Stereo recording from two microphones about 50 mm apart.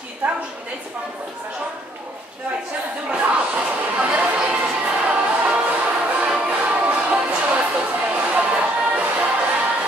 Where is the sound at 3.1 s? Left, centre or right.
Right.